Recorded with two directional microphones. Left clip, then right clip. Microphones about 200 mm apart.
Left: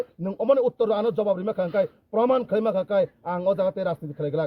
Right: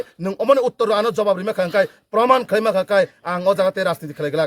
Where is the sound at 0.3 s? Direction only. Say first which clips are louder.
Right 5 dB; 15° right (ahead or behind).